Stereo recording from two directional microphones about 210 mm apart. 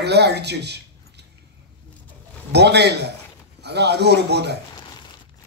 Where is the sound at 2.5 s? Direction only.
50° right (ahead or behind).